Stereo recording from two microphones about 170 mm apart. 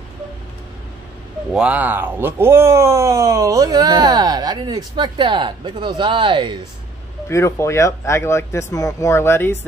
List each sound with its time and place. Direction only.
1.5 s speech: 5° right (ahead or behind); by 6.6 s 30° right (ahead or behind)
7.2 s speech: 15° left (ahead or behind)